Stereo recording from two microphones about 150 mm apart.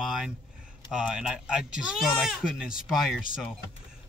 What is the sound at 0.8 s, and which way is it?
Speech, 5° right (ahead or behind).